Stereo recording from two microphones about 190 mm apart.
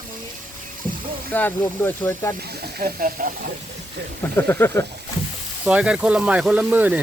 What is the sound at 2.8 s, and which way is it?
Speech, 50° right (ahead or behind).